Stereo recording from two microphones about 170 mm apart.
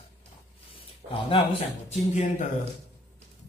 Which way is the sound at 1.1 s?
30° left (ahead or behind).